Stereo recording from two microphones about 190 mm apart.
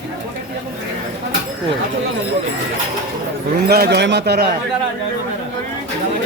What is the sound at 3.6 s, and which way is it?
Speech, 55° right (ahead or behind).